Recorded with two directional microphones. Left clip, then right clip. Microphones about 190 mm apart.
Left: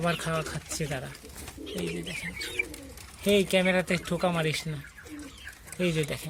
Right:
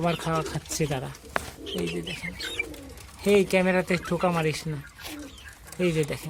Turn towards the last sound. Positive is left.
turn(degrees=-10)  # may be behind; listen again after turning